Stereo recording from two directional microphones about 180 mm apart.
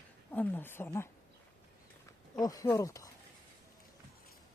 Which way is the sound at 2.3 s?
20° left (ahead or behind).